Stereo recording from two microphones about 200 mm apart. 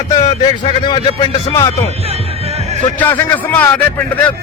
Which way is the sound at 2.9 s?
10° left (ahead or behind).